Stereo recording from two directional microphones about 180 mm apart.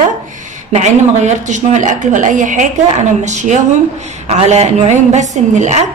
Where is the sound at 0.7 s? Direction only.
40° right (ahead or behind).